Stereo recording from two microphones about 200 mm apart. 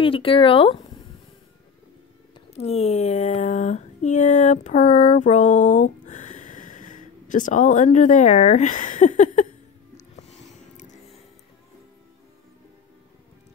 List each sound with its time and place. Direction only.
0.0 s speech: 25° left (ahead or behind)
2.3 s a sound: 30° left (ahead or behind)
9.9 s music: 35° left (ahead or behind)